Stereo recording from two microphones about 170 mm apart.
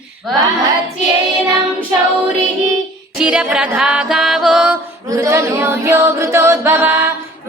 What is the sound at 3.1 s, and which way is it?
Music, 5° right (ahead or behind).